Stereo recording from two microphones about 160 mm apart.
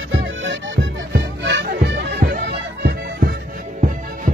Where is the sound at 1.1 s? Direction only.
90° right.